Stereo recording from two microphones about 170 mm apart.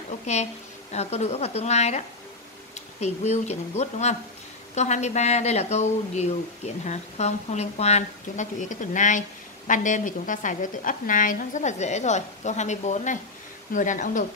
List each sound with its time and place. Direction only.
0.3 s a woman's voice: 40° left (ahead or behind)